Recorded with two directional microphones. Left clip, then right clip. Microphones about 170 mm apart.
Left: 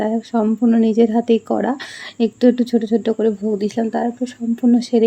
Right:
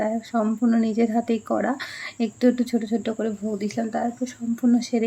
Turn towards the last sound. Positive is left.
turn(degrees=20)  # may be behind; listen again after turning